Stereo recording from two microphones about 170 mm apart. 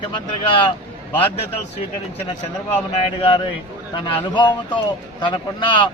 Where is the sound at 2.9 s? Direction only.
35° left (ahead or behind).